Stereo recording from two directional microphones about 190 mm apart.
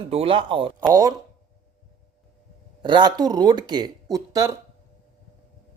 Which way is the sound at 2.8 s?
25° right (ahead or behind).